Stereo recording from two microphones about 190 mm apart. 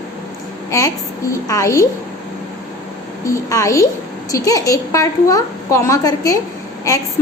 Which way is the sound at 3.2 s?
15° left (ahead or behind).